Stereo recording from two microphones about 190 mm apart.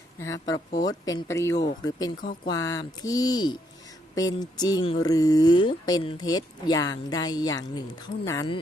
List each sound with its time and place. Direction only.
0.2 s speech: 20° left (ahead or behind)